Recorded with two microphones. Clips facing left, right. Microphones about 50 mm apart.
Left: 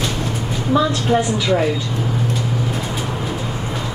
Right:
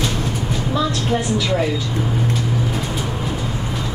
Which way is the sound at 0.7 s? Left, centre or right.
Centre.